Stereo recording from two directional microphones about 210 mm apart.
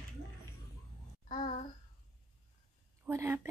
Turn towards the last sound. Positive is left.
turn(degrees=-15)  # may be behind; listen again after turning